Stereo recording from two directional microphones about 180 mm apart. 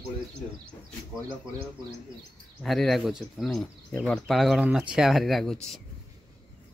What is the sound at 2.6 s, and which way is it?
Speech, centre (ahead or behind).